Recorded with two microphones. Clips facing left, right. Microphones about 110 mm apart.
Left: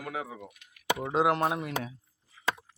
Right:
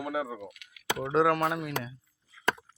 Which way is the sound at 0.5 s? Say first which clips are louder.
Right 3 dB; 65° right (ahead or behind).